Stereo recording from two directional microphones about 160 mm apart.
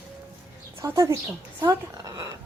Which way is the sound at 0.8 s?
20° right (ahead or behind).